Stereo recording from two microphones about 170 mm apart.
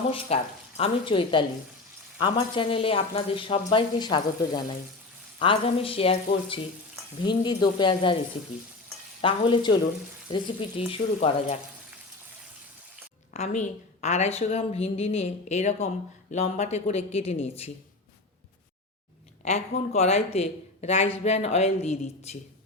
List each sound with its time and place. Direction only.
0.3 s speech: 35° left (ahead or behind)
7.3 s speech: 25° left (ahead or behind)
9.2 s speech: 30° left (ahead or behind)
13.3 s speech: 45° left (ahead or behind)
19.5 s speech: 40° left (ahead or behind)